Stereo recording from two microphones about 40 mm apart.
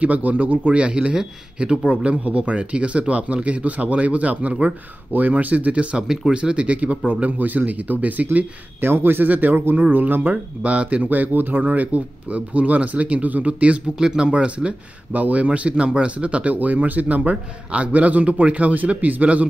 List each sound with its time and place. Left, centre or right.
0.0 s a man's voice: right
8.8 s speech: right
10.6 s a man's voice: right
13.9 s speech: centre
15.1 s a man's voice: right
16.5 s speech: right
17.2 s a man's voice: right